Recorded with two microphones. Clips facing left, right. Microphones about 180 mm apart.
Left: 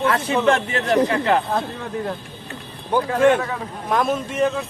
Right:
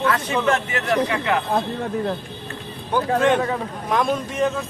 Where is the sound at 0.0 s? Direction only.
25° left (ahead or behind).